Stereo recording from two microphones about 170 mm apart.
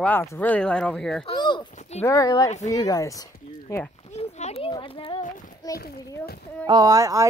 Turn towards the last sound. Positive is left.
turn(degrees=-20)  # may be behind; listen again after turning